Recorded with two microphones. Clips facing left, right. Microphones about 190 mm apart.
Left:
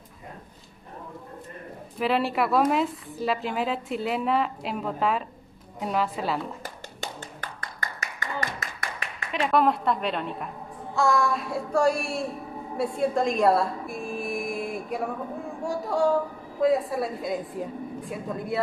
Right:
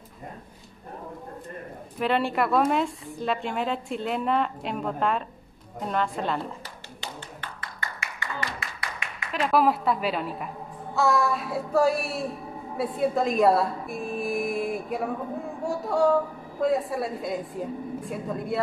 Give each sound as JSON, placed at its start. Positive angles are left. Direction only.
{"t": 2.0, "sound": "a woman's voice", "side_deg": 0}
{"t": 6.6, "sound": "a sound", "side_deg": 45}
{"t": 9.3, "sound": "a woman's voice", "side_deg": 0}